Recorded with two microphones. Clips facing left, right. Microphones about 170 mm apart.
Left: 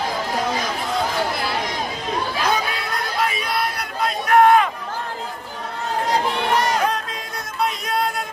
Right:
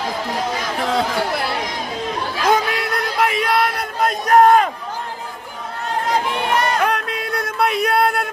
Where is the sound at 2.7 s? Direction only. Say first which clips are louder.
Right 4 dB; 80° right.